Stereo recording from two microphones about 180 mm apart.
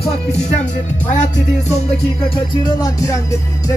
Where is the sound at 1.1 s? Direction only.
40° left (ahead or behind).